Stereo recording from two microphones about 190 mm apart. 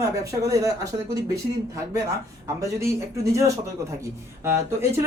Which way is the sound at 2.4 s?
15° right (ahead or behind).